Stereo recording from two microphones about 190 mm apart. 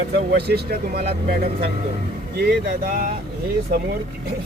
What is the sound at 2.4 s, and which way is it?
Speech, 55° right (ahead or behind).